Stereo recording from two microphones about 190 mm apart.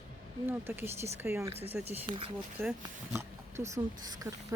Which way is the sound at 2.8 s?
15° right (ahead or behind).